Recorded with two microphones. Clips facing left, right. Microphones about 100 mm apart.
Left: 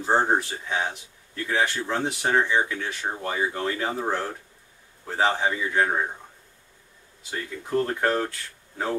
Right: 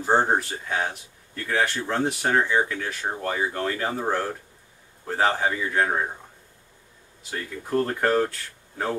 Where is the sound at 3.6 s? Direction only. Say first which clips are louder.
Even; 15° left (ahead or behind).